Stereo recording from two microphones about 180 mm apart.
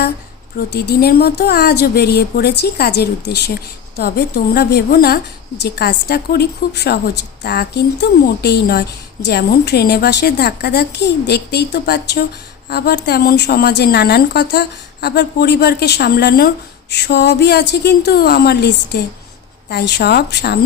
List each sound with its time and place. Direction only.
0.7 s speech: 60° left (ahead or behind)